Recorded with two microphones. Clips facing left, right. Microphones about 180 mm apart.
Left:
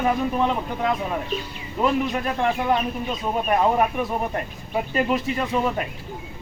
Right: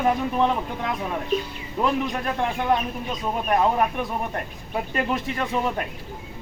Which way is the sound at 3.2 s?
5° left (ahead or behind).